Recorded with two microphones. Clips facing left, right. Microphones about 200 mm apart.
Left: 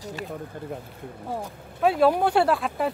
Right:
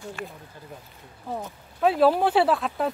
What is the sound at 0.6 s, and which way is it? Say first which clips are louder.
Speech: left 10 dB; 60° left (ahead or behind).